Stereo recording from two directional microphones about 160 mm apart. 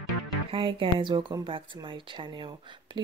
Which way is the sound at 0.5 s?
30° right (ahead or behind).